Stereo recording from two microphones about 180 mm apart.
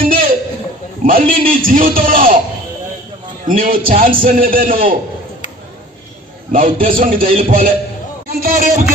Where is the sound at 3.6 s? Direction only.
50° right (ahead or behind).